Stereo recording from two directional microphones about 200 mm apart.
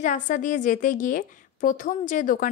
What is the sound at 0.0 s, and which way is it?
A woman's voice, 40° left (ahead or behind).